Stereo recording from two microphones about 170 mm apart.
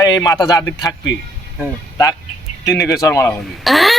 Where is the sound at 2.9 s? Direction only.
20° left (ahead or behind).